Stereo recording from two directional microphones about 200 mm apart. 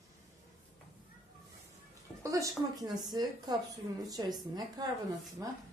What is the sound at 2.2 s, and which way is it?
A woman's voice, 15° right (ahead or behind).